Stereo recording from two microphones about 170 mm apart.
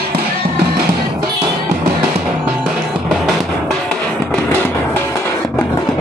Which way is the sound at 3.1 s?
Centre (ahead or behind).